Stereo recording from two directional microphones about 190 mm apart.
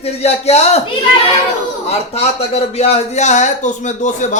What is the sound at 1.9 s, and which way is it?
Speech, 35° left (ahead or behind).